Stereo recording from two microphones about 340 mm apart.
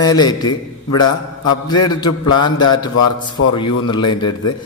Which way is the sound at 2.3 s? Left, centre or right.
Left.